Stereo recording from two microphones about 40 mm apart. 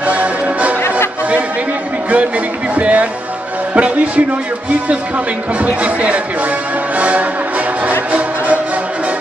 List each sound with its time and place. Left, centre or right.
0.0 s music: right
2.0 s music: right
3.7 s a man's voice: right
7.0 s music: right